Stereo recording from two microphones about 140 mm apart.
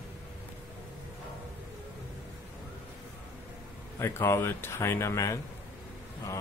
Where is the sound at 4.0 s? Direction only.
20° left (ahead or behind).